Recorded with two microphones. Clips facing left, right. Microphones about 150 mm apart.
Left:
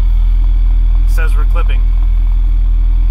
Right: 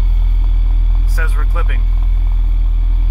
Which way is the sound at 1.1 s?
15° left (ahead or behind).